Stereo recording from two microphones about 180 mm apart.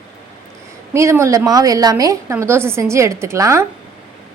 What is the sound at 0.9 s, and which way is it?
A woman's voice, 15° right (ahead or behind).